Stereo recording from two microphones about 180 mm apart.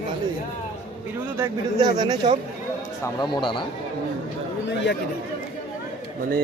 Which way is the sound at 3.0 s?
20° left (ahead or behind).